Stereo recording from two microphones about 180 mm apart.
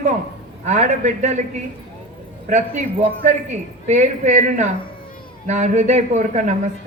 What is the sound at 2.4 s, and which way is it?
A man's voice, 40° right (ahead or behind).